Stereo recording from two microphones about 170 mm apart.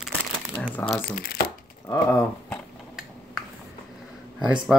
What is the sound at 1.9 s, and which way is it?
Speech, 15° left (ahead or behind).